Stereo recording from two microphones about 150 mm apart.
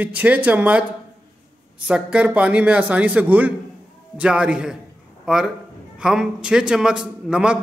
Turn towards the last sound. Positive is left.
turn(degrees=-5)  # may be behind; listen again after turning